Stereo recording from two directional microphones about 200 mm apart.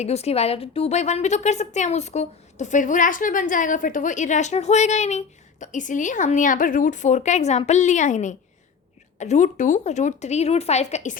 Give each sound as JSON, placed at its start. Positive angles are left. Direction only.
{"t": 0.0, "sound": "a woman's voice", "side_deg": 30}